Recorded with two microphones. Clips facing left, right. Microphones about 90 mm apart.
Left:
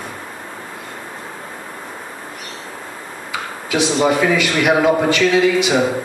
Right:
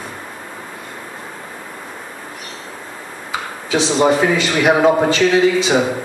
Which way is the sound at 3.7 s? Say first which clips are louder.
Right 2 dB; 30° right (ahead or behind).